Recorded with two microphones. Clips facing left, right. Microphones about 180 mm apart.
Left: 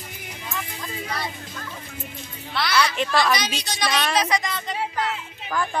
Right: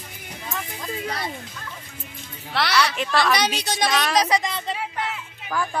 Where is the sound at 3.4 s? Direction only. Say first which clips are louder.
Right 4 dB; 60° right (ahead or behind).